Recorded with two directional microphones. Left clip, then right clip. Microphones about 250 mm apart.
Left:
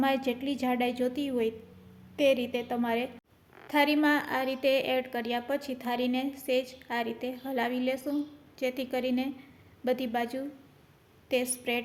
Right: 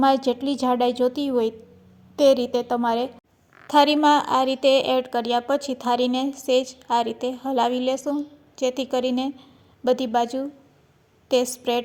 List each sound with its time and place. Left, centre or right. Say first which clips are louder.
0.0 s a woman's voice: right 9 dB; right